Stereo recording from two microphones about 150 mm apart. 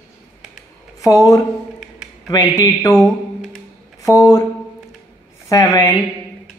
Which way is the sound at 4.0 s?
25° left (ahead or behind).